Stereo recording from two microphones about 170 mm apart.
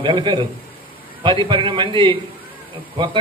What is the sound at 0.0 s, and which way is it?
A man's voice, 30° right (ahead or behind).